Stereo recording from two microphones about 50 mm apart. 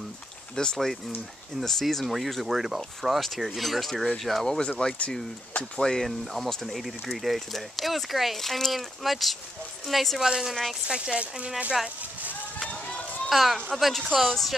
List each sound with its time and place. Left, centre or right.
0.6 s speech: centre
4.5 s speech: centre
10.2 s a woman's voice: centre
10.5 s speech: centre
10.9 s speech: right
13.3 s speech: centre